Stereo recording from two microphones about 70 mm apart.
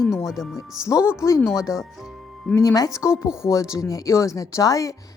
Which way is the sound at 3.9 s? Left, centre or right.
Left.